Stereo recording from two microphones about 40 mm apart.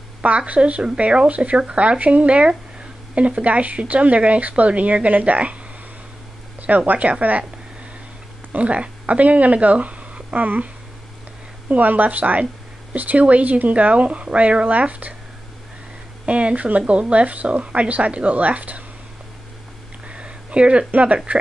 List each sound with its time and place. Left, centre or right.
0.5 s speech: right
6.9 s speech: right
8.5 s speech: right
11.7 s a woman's voice: right
16.3 s speech: right
20.1 s a sound: right
21.3 s speech: right